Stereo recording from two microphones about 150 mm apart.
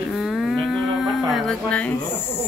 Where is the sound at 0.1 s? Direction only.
Centre (ahead or behind).